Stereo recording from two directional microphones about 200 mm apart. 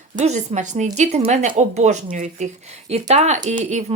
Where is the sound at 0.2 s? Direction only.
35° right (ahead or behind).